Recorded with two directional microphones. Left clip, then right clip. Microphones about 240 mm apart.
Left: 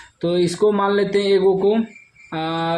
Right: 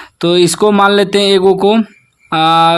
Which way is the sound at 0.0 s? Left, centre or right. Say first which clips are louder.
Right 9 dB; right.